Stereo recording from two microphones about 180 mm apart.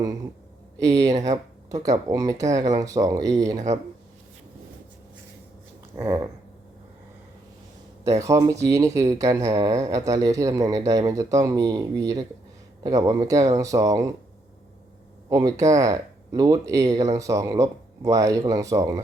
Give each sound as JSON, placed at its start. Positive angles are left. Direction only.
{"t": 0.8, "sound": "speech", "side_deg": -20}
{"t": 1.1, "sound": "speech", "side_deg": -40}
{"t": 1.7, "sound": "speech", "side_deg": -20}
{"t": 6.0, "sound": "speech", "side_deg": -15}
{"t": 8.2, "sound": "speech", "side_deg": -15}
{"t": 15.3, "sound": "speech", "side_deg": -20}